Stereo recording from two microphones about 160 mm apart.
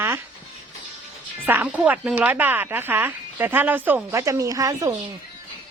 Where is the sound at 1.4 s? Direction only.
10° right (ahead or behind).